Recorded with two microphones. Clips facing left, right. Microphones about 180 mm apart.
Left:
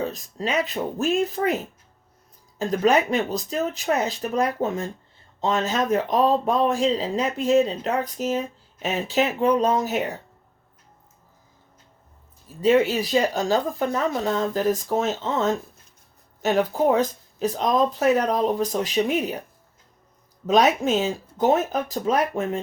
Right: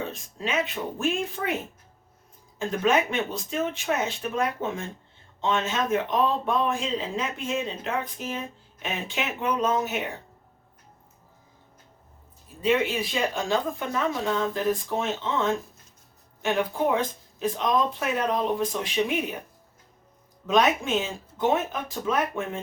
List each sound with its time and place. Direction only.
0.0 s speech: 40° left (ahead or behind)
2.6 s speech: 40° left (ahead or behind)
12.6 s speech: 40° left (ahead or behind)
20.5 s speech: 40° left (ahead or behind)